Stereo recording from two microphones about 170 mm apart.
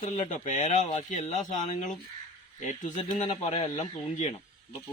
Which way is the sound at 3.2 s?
40° left (ahead or behind).